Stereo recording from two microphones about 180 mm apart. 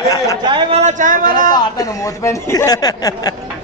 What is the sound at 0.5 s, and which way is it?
Speech, 25° right (ahead or behind).